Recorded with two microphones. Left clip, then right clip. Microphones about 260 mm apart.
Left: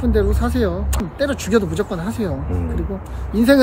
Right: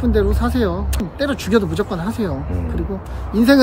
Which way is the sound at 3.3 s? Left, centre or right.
Centre.